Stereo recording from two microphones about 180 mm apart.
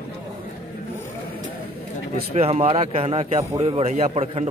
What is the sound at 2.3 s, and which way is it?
Speech, 35° right (ahead or behind).